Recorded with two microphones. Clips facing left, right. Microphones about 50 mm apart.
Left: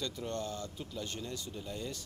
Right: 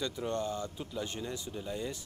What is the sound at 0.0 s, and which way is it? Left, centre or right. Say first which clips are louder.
Speech: right 4 dB; centre.